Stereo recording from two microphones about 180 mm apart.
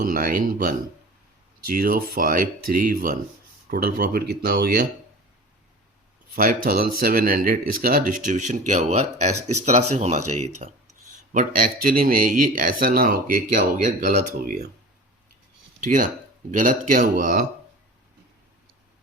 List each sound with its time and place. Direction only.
0.0 s speech: 50° right (ahead or behind)
6.3 s speech: 50° right (ahead or behind)
15.8 s speech: 50° right (ahead or behind)